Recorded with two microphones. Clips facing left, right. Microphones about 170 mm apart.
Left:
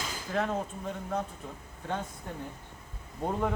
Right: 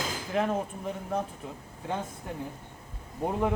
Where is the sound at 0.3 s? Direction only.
15° right (ahead or behind).